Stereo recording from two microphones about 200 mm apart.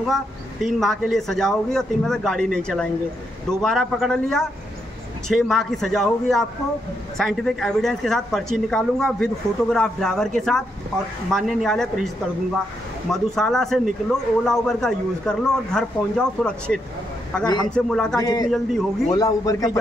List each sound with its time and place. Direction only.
0.1 s a woman's voice: centre (ahead or behind)
13.1 s a woman's voice: centre (ahead or behind)
18.2 s a man's voice: 20° left (ahead or behind)
18.5 s a woman's voice: centre (ahead or behind)
19.0 s a man's voice: 20° left (ahead or behind)